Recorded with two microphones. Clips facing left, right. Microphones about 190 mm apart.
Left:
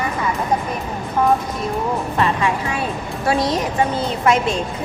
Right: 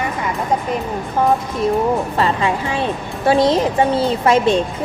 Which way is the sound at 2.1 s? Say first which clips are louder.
Right 1 dB; 30° right (ahead or behind).